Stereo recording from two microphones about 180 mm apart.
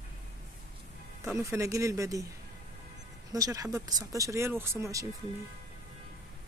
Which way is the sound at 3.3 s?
20° right (ahead or behind).